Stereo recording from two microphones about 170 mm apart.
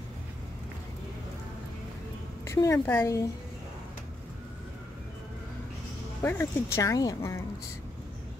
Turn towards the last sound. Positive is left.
turn(degrees=20)  # may be behind; listen again after turning